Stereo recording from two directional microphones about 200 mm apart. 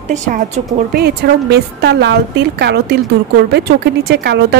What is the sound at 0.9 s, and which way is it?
Speech, 55° right (ahead or behind).